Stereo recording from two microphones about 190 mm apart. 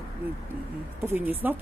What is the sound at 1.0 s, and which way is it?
Speech, 10° right (ahead or behind).